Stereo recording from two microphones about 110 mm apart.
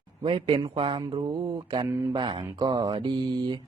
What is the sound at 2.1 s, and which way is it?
Speech, 45° right (ahead or behind).